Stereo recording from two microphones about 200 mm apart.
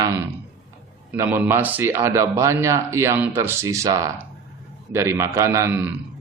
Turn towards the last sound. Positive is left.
turn(degrees=-15)  # may be behind; listen again after turning